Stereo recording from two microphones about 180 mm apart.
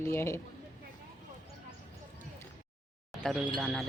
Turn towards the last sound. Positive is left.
turn(degrees=0)  # may be behind; listen again after turning